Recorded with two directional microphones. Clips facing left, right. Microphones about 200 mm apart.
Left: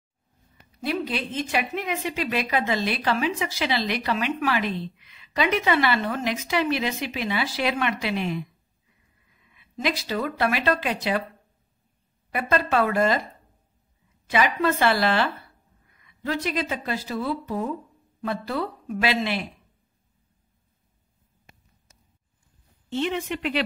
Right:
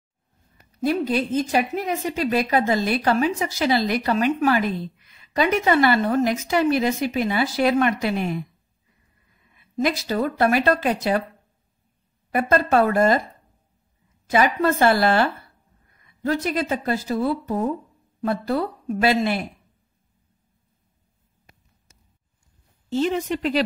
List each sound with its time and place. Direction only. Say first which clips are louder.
0.7 s a woman's voice: right 6 dB; 45° right (ahead or behind)
9.5 s a woman's voice: right 5 dB; 45° right (ahead or behind)
12.3 s a woman's voice: right 4 dB; 45° right (ahead or behind)
14.3 s a woman's voice: right 3 dB; 45° right (ahead or behind)
22.8 s a woman's voice: right 4 dB; 40° right (ahead or behind)